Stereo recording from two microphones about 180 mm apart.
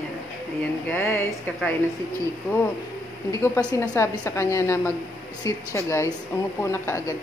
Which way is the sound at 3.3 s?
15° left (ahead or behind).